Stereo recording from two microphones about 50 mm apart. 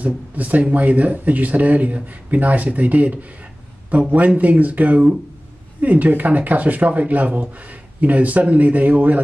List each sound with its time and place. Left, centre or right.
0.0 s speech: right
4.4 s speech: right